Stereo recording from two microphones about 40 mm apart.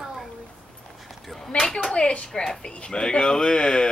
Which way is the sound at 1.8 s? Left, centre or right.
Left.